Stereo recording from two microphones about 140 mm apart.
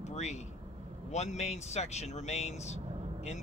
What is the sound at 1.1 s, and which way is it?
Speech, 55° left (ahead or behind).